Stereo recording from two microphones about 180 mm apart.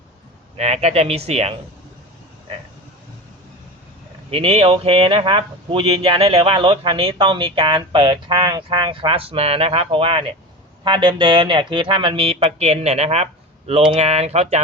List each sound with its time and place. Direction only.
0.5 s speech: 40° right (ahead or behind)
4.3 s speech: 35° right (ahead or behind)